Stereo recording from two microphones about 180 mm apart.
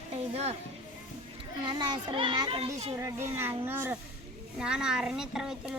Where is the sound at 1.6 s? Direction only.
25° right (ahead or behind).